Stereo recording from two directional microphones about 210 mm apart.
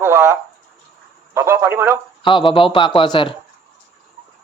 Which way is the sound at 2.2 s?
25° left (ahead or behind).